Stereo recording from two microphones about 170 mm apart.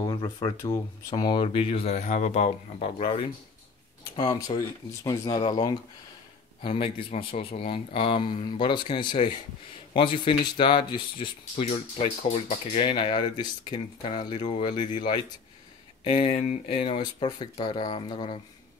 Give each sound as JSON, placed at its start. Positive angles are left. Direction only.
{"t": 0.0, "sound": "speech", "side_deg": 25}
{"t": 4.2, "sound": "speech", "side_deg": 25}